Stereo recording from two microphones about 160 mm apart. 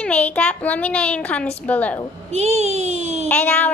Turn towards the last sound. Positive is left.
turn(degrees=10)  # may be behind; listen again after turning